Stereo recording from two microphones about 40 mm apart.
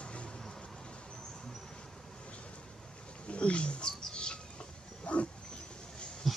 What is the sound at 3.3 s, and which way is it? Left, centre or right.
Roaring cats, left.